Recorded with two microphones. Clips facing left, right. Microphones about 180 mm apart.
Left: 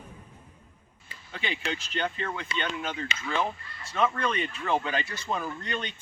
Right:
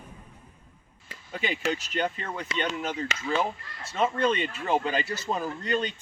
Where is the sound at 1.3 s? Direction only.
40° right (ahead or behind).